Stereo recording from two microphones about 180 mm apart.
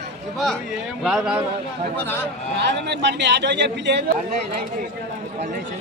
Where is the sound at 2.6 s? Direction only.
70° right (ahead or behind).